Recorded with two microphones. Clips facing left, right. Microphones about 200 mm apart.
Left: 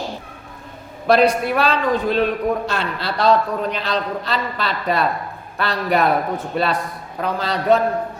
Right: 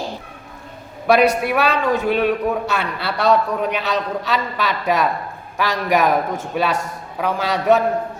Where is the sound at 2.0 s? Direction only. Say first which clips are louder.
Right 1 dB; 10° right (ahead or behind).